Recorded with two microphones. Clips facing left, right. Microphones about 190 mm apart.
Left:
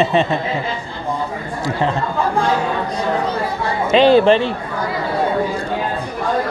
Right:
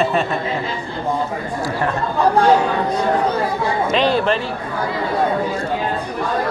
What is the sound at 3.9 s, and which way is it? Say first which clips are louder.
Speech: left 8 dB; 30° left (ahead or behind).